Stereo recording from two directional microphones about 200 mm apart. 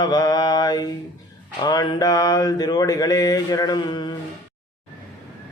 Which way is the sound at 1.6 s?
20° left (ahead or behind).